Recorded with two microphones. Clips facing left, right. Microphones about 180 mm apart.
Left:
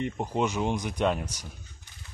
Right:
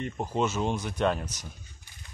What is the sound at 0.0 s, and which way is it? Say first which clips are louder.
Speech: left 1 dB; 15° left (ahead or behind).